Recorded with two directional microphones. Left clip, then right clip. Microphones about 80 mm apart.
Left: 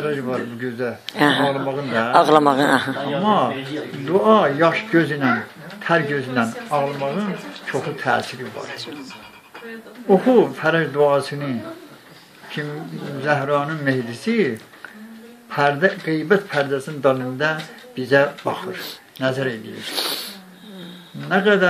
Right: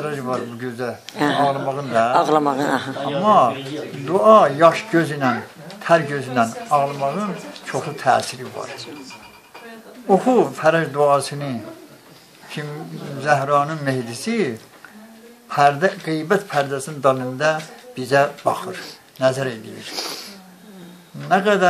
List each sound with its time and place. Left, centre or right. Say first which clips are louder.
0.0 s speech: left 1 dB; right
1.0 s a man's voice: left 1 dB; centre
3.2 s a man's voice: right 5 dB; right
10.0 s speech: left 1 dB; right
12.6 s a man's voice: left 2 dB; right
15.5 s a man's voice: right 2 dB; right
19.9 s a sound: left 4 dB; centre
21.3 s speech: even; right